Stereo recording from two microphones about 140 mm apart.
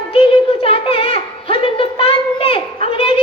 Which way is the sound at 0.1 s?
40° left (ahead or behind).